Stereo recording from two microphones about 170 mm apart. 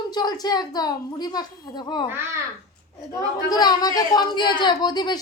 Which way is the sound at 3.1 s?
25° left (ahead or behind).